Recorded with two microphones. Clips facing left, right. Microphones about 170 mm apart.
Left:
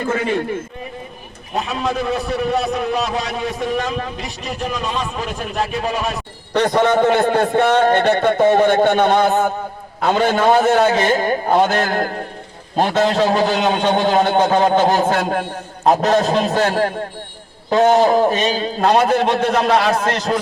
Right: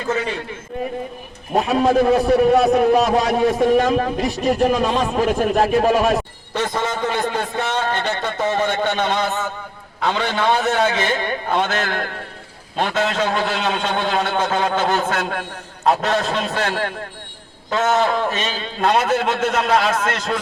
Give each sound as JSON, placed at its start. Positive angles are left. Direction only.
{"t": 0.0, "sound": "a man's voice", "side_deg": 40}
{"t": 1.5, "sound": "speech", "side_deg": -50}
{"t": 6.9, "sound": "a man's voice", "side_deg": 45}